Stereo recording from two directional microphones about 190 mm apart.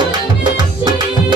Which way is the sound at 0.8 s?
25° right (ahead or behind).